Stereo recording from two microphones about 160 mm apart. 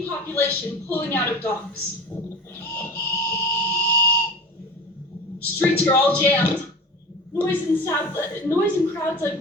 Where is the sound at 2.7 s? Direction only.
15° left (ahead or behind).